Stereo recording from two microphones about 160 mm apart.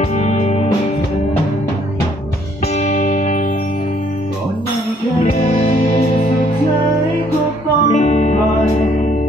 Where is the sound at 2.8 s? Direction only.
55° left (ahead or behind).